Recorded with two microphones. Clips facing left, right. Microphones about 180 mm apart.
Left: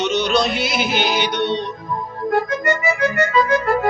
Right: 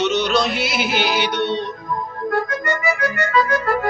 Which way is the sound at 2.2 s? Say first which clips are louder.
Left 3 dB; 25° left (ahead or behind).